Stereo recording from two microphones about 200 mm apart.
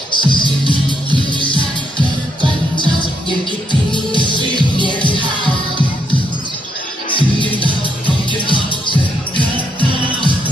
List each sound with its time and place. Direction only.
0.1 s music: 25° left (ahead or behind)
3.9 s music: 25° left (ahead or behind)
7.1 s music: 25° left (ahead or behind)
9.4 s music: 25° right (ahead or behind)